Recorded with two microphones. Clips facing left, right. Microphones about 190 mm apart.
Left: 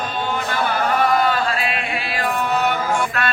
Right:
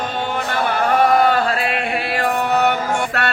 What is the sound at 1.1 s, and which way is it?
Chant, 55° right (ahead or behind).